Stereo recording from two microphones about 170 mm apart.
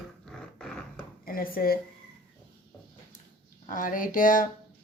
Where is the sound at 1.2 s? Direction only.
60° left (ahead or behind).